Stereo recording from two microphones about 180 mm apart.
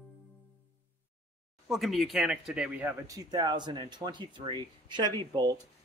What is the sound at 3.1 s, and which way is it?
Speech, 20° right (ahead or behind).